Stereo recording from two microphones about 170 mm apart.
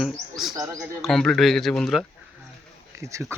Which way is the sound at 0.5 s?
20° right (ahead or behind).